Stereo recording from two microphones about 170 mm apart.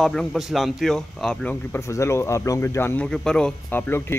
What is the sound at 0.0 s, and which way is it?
Speech, centre (ahead or behind).